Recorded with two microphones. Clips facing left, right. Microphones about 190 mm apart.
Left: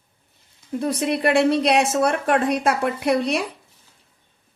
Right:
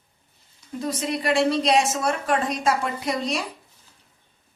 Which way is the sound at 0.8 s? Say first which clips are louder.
Left 5 dB; 60° left (ahead or behind).